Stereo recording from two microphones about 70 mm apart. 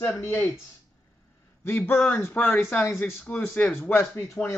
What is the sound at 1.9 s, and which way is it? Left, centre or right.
A man's voice, left.